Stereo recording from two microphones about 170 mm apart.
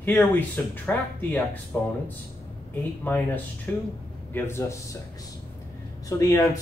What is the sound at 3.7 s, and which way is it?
Speech, 10° left (ahead or behind).